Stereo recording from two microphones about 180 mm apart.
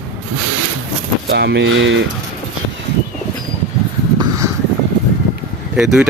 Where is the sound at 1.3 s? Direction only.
70° right (ahead or behind).